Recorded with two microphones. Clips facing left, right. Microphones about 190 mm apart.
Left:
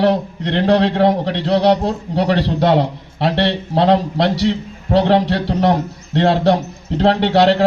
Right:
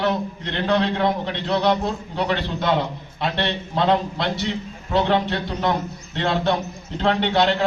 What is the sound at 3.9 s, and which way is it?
Speech, 80° left.